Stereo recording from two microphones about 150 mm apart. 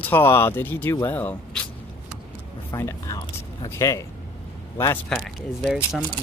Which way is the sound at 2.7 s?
20° left (ahead or behind).